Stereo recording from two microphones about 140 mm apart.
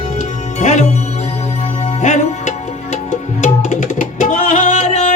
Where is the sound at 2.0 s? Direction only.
60° left (ahead or behind).